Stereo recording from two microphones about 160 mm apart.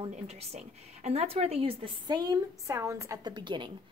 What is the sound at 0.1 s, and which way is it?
Speech, 40° right (ahead or behind).